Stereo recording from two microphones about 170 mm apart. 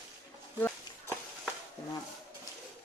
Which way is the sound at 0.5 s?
10° left (ahead or behind).